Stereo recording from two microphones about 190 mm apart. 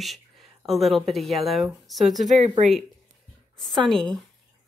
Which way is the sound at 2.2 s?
35° right (ahead or behind).